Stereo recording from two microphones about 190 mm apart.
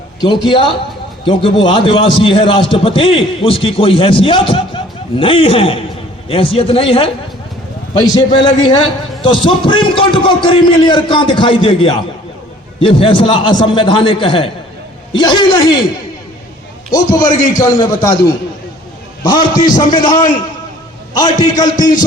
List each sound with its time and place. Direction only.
0.4 s a man's voice: 25° left (ahead or behind)
16.9 s a man's voice: 20° left (ahead or behind)
19.2 s a man's voice: 20° left (ahead or behind)
21.6 s a man's voice: 20° left (ahead or behind)